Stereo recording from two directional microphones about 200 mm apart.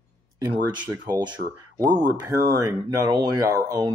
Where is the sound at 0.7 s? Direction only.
20° right (ahead or behind).